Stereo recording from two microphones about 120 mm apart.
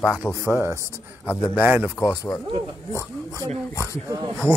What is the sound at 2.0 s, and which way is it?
Speech, 30° left (ahead or behind).